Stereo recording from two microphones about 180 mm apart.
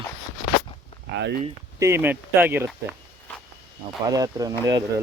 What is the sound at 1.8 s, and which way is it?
Speech, 15° right (ahead or behind).